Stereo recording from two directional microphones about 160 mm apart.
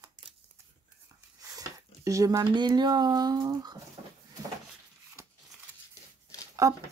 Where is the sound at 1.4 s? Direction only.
25° right (ahead or behind).